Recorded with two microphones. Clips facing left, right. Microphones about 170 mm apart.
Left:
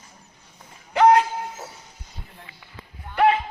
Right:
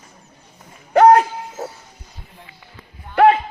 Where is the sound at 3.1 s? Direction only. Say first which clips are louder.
Right 6 dB; 50° right (ahead or behind).